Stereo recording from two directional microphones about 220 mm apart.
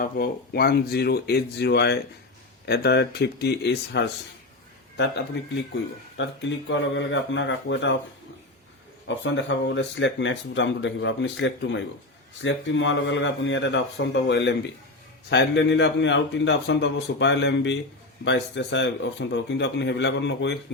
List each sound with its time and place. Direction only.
0.0 s a man's voice: 45° left (ahead or behind)
9.0 s a man's voice: 55° left (ahead or behind)